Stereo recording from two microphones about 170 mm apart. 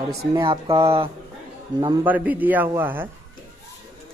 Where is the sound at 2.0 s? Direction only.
10° right (ahead or behind).